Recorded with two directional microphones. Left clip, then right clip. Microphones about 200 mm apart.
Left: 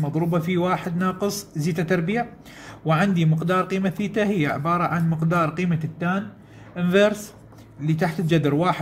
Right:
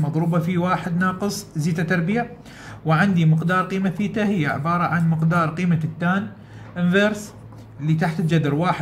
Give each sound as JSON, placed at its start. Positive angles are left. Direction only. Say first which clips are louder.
{"t": 0.0, "sound": "a man's voice", "louder": "even", "side_deg": 25}